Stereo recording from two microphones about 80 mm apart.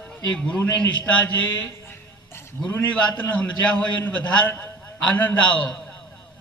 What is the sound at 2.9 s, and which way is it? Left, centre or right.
A man's voice, centre.